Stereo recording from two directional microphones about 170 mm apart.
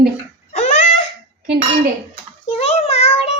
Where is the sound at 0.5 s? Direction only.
45° left (ahead or behind).